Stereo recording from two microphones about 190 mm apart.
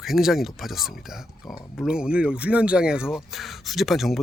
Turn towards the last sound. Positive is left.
turn(degrees=0)  # may be behind; listen again after turning